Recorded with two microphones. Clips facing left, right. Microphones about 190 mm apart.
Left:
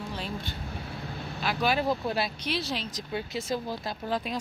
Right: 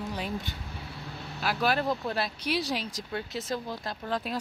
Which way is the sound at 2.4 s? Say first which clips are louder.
Right 2 dB; 15° right (ahead or behind).